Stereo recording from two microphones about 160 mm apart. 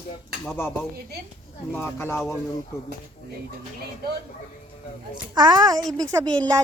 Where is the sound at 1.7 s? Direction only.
15° left (ahead or behind).